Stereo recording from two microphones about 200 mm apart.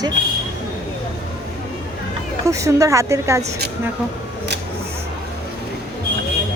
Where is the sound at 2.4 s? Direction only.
15° right (ahead or behind).